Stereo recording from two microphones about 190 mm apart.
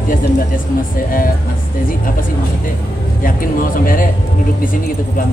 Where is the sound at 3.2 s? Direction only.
45° left (ahead or behind).